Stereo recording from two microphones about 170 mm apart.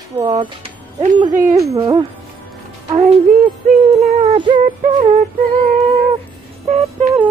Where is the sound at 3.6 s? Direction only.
45° right (ahead or behind).